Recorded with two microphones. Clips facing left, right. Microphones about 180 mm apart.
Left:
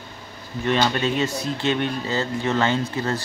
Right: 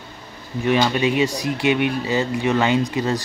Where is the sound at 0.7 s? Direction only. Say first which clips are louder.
Right 3 dB; 10° right (ahead or behind).